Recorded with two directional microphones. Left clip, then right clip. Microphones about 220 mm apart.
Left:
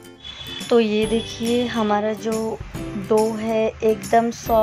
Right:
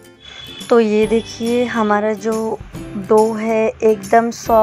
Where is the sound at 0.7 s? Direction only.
20° right (ahead or behind).